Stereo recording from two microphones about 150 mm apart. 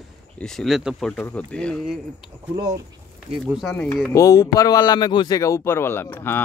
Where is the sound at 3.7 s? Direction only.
15° left (ahead or behind).